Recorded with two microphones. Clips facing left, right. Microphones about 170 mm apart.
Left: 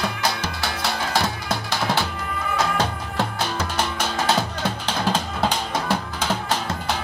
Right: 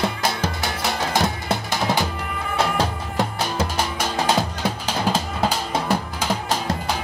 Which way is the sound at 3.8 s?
10° right (ahead or behind).